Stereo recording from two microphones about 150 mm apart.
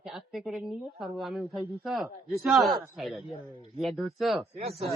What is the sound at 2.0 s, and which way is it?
Speech, 20° right (ahead or behind).